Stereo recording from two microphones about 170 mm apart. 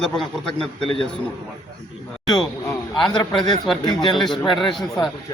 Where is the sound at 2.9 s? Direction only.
25° left (ahead or behind).